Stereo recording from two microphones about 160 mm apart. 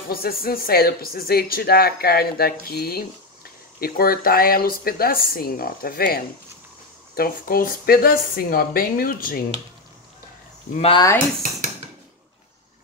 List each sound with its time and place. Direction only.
0.1 s speech: 70° left (ahead or behind)
10.8 s speech: 30° left (ahead or behind)